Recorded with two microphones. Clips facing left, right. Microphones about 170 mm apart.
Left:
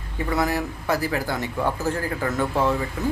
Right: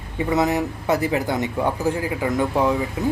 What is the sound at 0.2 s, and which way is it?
Speech, 20° right (ahead or behind).